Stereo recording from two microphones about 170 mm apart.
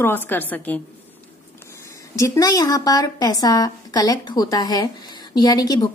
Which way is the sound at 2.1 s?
20° left (ahead or behind).